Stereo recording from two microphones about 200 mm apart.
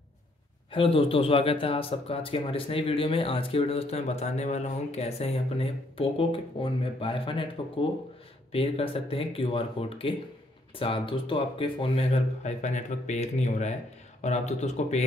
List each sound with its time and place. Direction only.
0.7 s speech: 25° left (ahead or behind)
8.5 s speech: 30° left (ahead or behind)